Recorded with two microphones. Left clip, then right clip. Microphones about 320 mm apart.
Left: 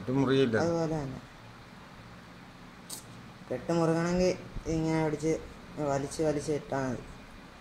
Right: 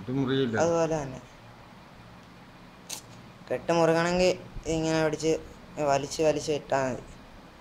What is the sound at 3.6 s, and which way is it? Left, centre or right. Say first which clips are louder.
Speech: right 6 dB; right.